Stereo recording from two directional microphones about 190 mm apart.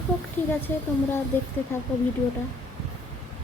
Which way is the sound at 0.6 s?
10° left (ahead or behind).